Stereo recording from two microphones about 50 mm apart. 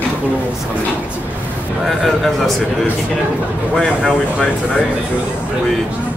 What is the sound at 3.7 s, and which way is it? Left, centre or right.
Speech, centre.